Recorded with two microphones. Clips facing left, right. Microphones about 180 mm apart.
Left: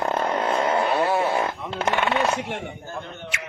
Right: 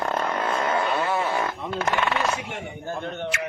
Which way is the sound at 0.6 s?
30° left (ahead or behind).